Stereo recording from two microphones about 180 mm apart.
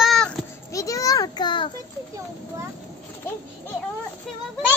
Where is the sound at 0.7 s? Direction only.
20° left (ahead or behind).